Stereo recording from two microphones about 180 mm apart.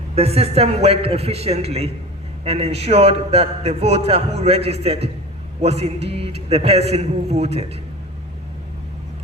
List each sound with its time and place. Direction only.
0.2 s a man's voice: 35° right (ahead or behind)